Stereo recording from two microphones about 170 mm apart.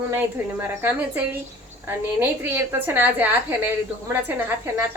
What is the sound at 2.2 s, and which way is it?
A woman's voice, 10° right (ahead or behind).